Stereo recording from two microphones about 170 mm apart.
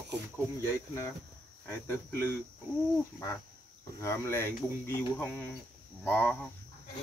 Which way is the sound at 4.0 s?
15° left (ahead or behind).